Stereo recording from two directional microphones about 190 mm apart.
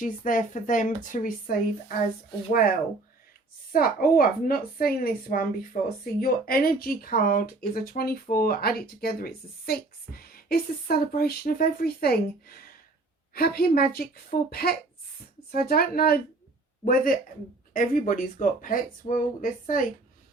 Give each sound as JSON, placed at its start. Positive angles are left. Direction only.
{"t": 0.0, "sound": "speech", "side_deg": 45}